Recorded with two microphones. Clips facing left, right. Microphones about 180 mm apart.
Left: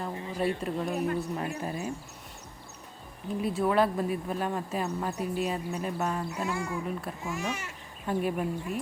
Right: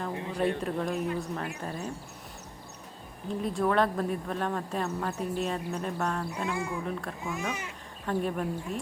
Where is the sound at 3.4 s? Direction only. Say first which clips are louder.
Left 1 dB; 5° left (ahead or behind).